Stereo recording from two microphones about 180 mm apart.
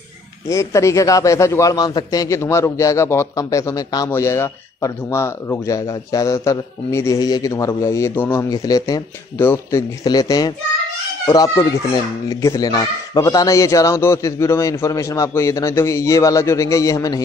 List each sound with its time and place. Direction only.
0.5 s a man's voice: 15° left (ahead or behind)